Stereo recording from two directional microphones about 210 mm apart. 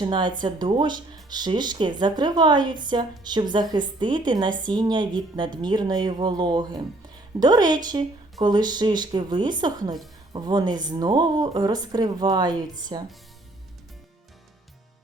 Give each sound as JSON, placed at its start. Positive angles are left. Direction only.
{"t": 0.0, "sound": "speech", "side_deg": -20}